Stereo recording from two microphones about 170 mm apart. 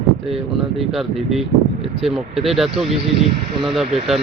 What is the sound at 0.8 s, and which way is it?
Speech, centre (ahead or behind).